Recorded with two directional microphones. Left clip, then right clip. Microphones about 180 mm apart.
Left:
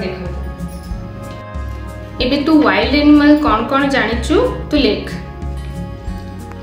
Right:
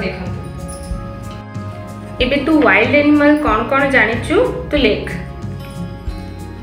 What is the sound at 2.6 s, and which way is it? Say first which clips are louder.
A woman's voice: right 1 dB; 50° left (ahead or behind).